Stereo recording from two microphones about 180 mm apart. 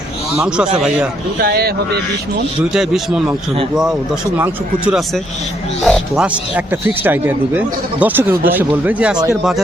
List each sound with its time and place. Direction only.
0.4 s a man's voice: 5° right (ahead or behind)
1.4 s speech: 60° right (ahead or behind)
2.7 s a man's voice: 5° right (ahead or behind)
4.4 s a man's voice: 10° right (ahead or behind)